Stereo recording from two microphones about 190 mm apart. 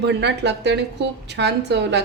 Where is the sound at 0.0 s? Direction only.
65° right (ahead or behind).